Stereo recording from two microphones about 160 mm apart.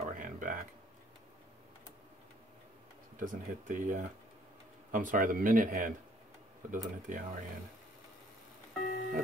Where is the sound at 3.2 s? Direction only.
55° right (ahead or behind).